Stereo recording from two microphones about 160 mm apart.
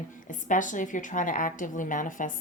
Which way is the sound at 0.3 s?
55° left (ahead or behind).